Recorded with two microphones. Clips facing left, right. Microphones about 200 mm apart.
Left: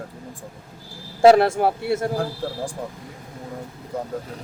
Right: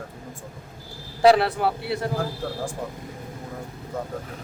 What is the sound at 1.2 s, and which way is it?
Speech, 45° left (ahead or behind).